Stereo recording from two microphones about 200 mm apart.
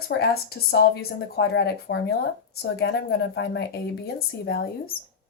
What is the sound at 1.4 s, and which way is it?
Speech, 55° left (ahead or behind).